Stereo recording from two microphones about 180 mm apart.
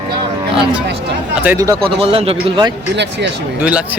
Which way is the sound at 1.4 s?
15° right (ahead or behind).